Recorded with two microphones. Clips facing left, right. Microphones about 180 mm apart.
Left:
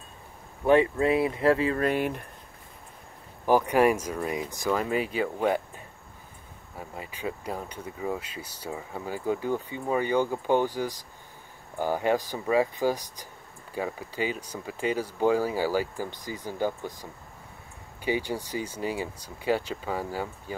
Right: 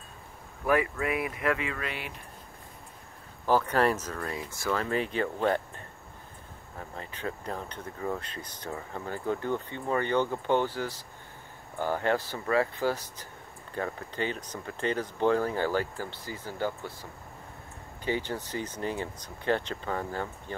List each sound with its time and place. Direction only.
0.7 s speech: 25° left (ahead or behind); by 2.2 s 50° left (ahead or behind)
3.4 s speech: 15° left (ahead or behind)